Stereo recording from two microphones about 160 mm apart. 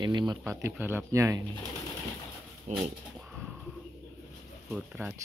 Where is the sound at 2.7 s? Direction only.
Centre (ahead or behind).